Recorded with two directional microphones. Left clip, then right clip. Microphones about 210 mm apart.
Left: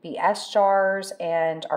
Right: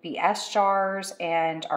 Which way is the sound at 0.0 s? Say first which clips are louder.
Left 2 dB; 20° left (ahead or behind).